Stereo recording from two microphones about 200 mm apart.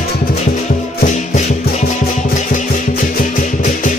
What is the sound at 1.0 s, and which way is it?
Music, 35° left (ahead or behind).